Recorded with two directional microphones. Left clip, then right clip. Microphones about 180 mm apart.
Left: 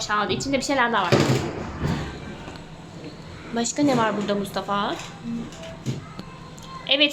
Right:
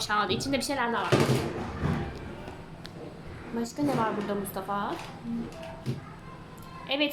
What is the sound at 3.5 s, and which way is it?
A woman's voice, 15° left (ahead or behind).